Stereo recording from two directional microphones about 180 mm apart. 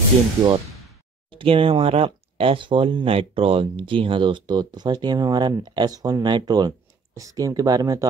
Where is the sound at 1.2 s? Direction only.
30° right (ahead or behind).